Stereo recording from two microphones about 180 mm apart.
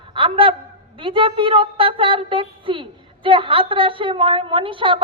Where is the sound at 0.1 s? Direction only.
30° right (ahead or behind).